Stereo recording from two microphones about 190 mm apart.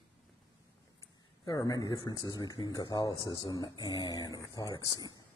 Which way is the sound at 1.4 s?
20° left (ahead or behind).